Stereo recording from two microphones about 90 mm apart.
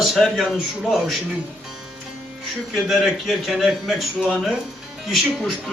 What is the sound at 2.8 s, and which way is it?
A man's voice, 5° right (ahead or behind).